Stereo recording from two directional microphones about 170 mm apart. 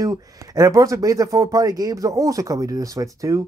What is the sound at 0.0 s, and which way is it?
Speech, 20° right (ahead or behind).